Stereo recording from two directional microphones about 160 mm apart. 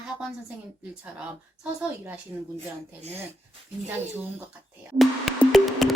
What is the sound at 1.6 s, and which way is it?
Speech, 5° right (ahead or behind).